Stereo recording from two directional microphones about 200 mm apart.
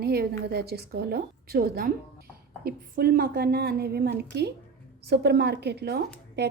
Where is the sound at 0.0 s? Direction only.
55° right (ahead or behind).